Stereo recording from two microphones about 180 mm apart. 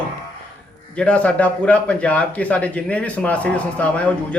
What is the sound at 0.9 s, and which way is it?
A man's voice, 5° left (ahead or behind).